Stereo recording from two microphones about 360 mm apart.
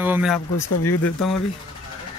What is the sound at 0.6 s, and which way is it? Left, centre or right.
Speech, left.